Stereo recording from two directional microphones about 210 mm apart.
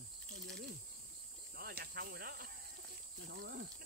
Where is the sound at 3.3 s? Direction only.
50° right (ahead or behind).